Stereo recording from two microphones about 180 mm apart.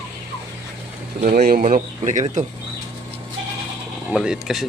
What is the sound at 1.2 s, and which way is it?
Speech, 55° right (ahead or behind).